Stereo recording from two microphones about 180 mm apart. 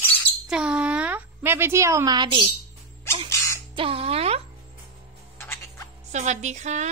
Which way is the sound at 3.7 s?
30° right (ahead or behind).